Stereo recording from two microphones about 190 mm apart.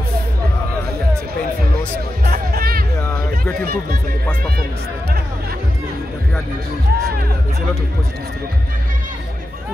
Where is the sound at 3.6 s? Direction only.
50° right (ahead or behind).